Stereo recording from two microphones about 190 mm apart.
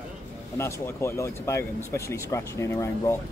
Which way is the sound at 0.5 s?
15° left (ahead or behind).